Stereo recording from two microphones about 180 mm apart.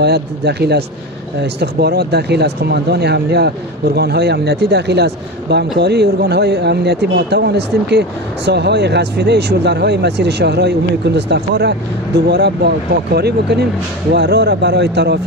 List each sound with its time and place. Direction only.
0.0 s speech: 65° right (ahead or behind)